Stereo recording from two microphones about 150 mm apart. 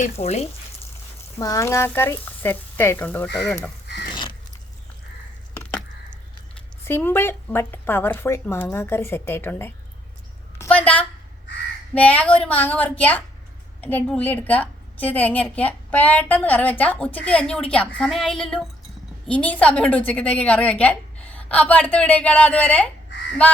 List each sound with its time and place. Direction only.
0.0 s speech: 45° left (ahead or behind)
1.4 s a woman's voice: 20° left (ahead or behind)
4.1 s biting: 30° left (ahead or behind)
6.8 s a woman's voice: 15° left (ahead or behind)
10.6 s a sound: 10° left (ahead or behind)
11.9 s a woman's voice: 10° left (ahead or behind)